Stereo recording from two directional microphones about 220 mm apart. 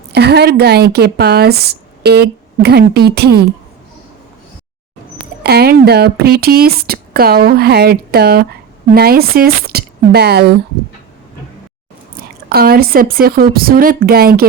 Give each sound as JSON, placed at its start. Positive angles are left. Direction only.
{"t": 0.1, "sound": "speech", "side_deg": -50}
{"t": 5.4, "sound": "a woman's voice", "side_deg": -45}
{"t": 12.1, "sound": "a woman's voice", "side_deg": -45}